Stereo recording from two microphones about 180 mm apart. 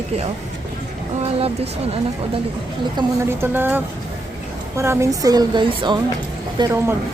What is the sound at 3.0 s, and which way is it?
Speech, 25° right (ahead or behind).